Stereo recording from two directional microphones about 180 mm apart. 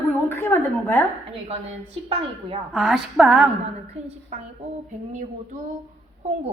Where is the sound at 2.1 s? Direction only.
35° right (ahead or behind).